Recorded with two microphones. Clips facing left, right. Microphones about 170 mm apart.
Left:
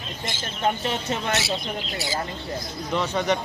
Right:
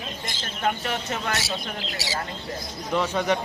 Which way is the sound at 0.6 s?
25° left (ahead or behind).